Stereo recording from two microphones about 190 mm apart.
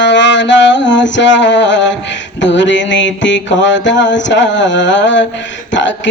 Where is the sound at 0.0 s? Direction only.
70° left (ahead or behind).